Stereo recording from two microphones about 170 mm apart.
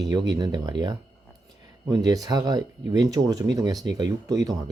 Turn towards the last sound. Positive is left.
turn(degrees=-20)  # may be behind; listen again after turning